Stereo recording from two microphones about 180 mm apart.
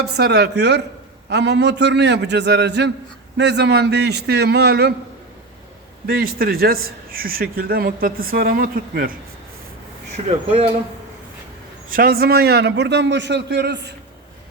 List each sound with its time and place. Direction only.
0.0 s a man's voice: 70° right (ahead or behind)
6.1 s a man's voice: 60° right (ahead or behind)
11.9 s a man's voice: 55° right (ahead or behind); by 13.9 s 70° right (ahead or behind)